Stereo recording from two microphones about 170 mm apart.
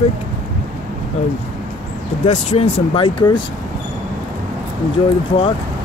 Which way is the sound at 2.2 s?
40° left (ahead or behind).